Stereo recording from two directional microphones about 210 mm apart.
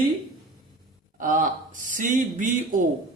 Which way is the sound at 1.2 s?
40° right (ahead or behind).